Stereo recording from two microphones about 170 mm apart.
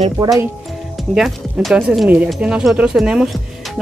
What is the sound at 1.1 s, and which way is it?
Speech, centre (ahead or behind).